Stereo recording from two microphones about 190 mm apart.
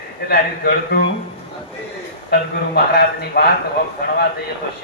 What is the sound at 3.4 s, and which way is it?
Speech, 55° left (ahead or behind).